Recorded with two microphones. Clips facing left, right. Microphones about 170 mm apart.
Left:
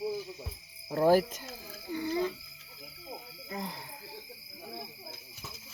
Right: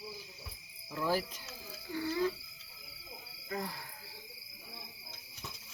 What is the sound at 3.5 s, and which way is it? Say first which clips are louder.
Speech: even; 20° left (ahead or behind).